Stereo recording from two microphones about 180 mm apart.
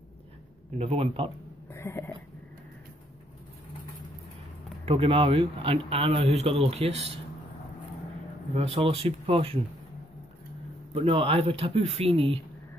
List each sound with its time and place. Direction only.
0.7 s speech: 30° right (ahead or behind)
1.7 s a sound: 15° left (ahead or behind)
4.8 s speech: 30° right (ahead or behind)
8.5 s speech: 30° right (ahead or behind)
11.0 s speech: 30° right (ahead or behind)